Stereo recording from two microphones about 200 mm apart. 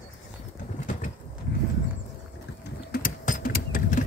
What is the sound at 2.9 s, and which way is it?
Sewing machine, 40° left (ahead or behind).